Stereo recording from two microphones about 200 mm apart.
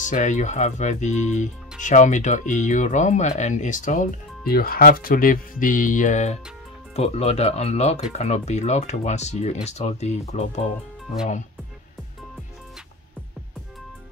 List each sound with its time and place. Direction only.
0.0 s speech: 35° left (ahead or behind)